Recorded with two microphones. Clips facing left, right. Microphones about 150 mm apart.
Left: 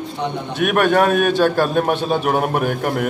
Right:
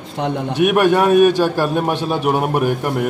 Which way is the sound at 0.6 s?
10° right (ahead or behind).